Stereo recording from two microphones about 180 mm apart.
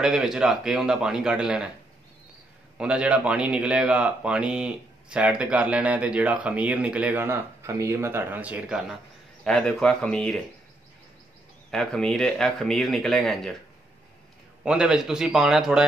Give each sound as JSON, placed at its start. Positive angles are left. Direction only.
{"t": 0.0, "sound": "speech", "side_deg": -5}
{"t": 2.8, "sound": "a man's voice", "side_deg": -5}
{"t": 11.7, "sound": "speech", "side_deg": 0}
{"t": 14.6, "sound": "speech", "side_deg": -5}